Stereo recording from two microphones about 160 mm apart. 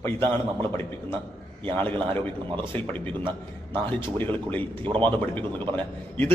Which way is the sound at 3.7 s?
10° left (ahead or behind).